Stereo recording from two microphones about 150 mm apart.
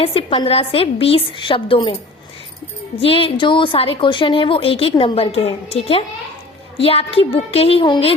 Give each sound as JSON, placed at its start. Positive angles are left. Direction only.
{"t": 0.0, "sound": "a woman's voice", "side_deg": 40}
{"t": 3.0, "sound": "a woman's voice", "side_deg": 40}